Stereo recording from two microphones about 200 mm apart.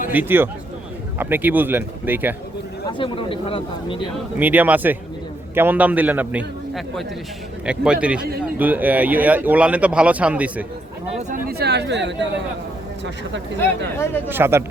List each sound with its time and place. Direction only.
0.1 s speech: 10° right (ahead or behind)
3.0 s speech: 25° left (ahead or behind)
4.4 s a man's voice: 10° right (ahead or behind)
11.2 s speech: 40° right (ahead or behind)
11.5 s a woman's voice: 55° right (ahead or behind)
13.6 s speech: 10° left (ahead or behind)
14.3 s speech: 10° right (ahead or behind)